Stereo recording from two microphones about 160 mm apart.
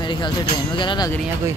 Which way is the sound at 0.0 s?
30° left (ahead or behind).